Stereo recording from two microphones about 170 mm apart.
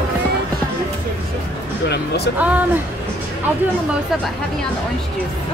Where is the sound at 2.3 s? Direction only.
10° right (ahead or behind).